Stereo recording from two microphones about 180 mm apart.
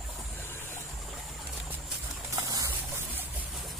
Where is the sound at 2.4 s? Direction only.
15° right (ahead or behind).